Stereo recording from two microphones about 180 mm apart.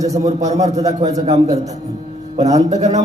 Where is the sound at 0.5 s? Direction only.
40° right (ahead or behind).